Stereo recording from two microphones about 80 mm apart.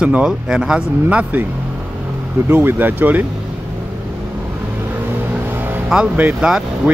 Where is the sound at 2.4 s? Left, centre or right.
Right.